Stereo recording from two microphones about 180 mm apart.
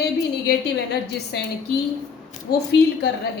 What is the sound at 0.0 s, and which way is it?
A woman's voice, 65° left (ahead or behind).